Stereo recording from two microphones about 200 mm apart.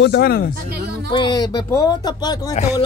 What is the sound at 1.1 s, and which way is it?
Speech, 20° left (ahead or behind).